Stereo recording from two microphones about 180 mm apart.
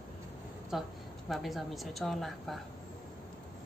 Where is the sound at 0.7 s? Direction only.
5° right (ahead or behind).